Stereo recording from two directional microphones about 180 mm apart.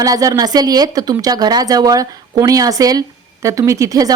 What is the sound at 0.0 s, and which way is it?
A woman's voice, 20° right (ahead or behind).